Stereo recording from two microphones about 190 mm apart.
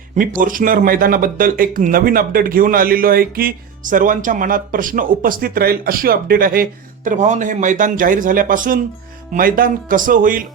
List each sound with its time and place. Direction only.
0.2 s speech: 45° right (ahead or behind)